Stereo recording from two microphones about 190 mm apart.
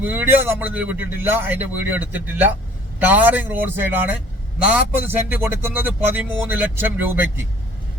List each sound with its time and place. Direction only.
0.0 s speech: 10° right (ahead or behind)